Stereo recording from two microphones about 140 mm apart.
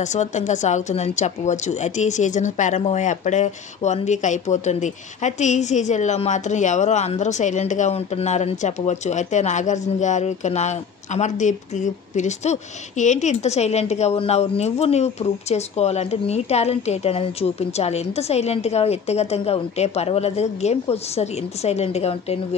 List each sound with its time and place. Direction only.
0.0 s a woman's voice: 60° left (ahead or behind)